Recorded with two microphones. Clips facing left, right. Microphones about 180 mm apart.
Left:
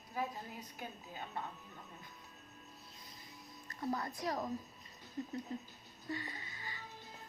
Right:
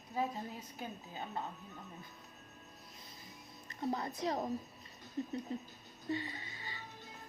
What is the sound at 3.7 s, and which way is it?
Speech, 25° right (ahead or behind).